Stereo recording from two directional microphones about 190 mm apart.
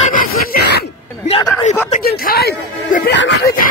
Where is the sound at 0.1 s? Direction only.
50° left (ahead or behind).